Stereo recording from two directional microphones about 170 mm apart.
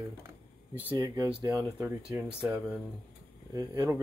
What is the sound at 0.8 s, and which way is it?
Speech, 15° right (ahead or behind).